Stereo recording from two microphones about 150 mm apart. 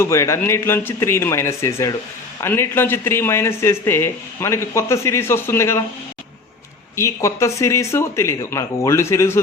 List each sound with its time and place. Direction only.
0.0 s speech: 20° left (ahead or behind)
6.9 s speech: 20° left (ahead or behind)